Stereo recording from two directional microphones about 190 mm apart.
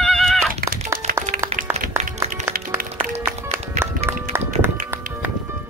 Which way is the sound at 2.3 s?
45° right (ahead or behind).